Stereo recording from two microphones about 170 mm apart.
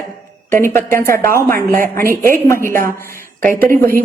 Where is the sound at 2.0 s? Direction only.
55° right (ahead or behind).